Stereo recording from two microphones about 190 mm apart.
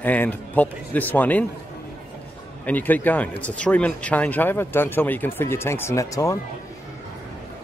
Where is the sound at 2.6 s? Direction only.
10° left (ahead or behind).